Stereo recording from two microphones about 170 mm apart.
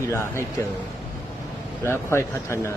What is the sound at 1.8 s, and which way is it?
Speech, 15° left (ahead or behind).